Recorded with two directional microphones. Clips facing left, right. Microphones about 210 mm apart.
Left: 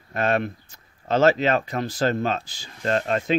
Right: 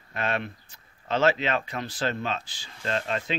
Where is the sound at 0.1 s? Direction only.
45° left (ahead or behind).